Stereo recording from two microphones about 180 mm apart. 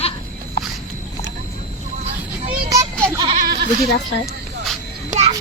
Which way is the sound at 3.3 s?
60° right (ahead or behind).